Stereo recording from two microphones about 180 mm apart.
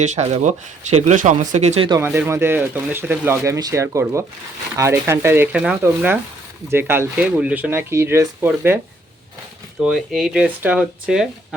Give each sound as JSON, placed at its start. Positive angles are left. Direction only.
{"t": 0.0, "sound": "speech", "side_deg": -40}
{"t": 1.9, "sound": "speech", "side_deg": -15}
{"t": 9.8, "sound": "speech", "side_deg": -5}